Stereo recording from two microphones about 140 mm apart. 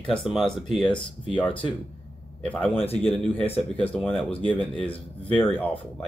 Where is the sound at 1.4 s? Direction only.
40° left (ahead or behind).